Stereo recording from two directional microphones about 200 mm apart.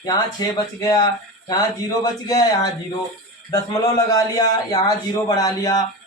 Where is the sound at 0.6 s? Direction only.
15° left (ahead or behind).